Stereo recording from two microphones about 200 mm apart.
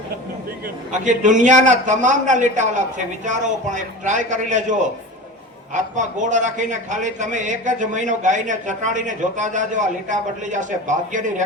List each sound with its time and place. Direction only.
0.9 s a man's voice: 40° right (ahead or behind)